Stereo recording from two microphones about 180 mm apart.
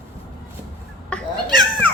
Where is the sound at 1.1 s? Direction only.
5° left (ahead or behind).